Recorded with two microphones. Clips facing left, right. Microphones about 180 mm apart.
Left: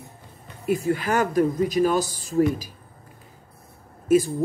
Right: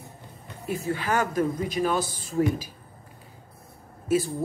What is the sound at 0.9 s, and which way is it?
Speech, 45° left (ahead or behind).